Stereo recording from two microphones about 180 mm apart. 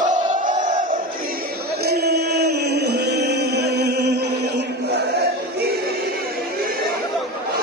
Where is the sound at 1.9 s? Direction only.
65° right (ahead or behind).